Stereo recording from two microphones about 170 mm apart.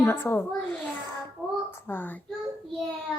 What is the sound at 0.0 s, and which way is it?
Speech, 10° left (ahead or behind).